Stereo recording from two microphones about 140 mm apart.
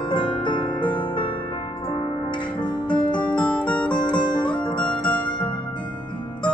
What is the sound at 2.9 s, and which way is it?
Music, 10° left (ahead or behind).